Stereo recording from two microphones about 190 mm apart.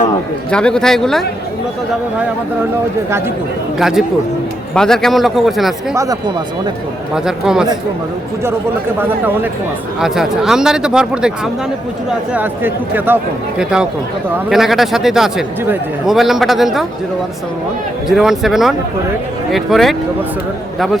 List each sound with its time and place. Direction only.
0.5 s a man's voice: 5° left (ahead or behind)
3.8 s a man's voice: centre (ahead or behind)
5.9 s speech: 15° right (ahead or behind)
7.3 s a man's voice: 5° right (ahead or behind)
9.0 s a man's voice: 10° right (ahead or behind)
12.3 s a man's voice: 10° right (ahead or behind)
18.2 s a man's voice: centre (ahead or behind)